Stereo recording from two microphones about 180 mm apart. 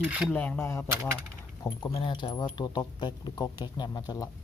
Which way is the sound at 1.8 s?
25° left (ahead or behind).